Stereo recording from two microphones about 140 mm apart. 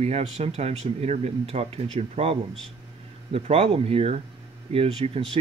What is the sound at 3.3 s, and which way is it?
Speech, 50° right (ahead or behind).